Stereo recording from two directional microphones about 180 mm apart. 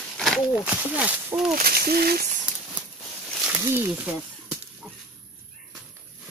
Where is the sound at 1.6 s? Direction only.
60° right (ahead or behind).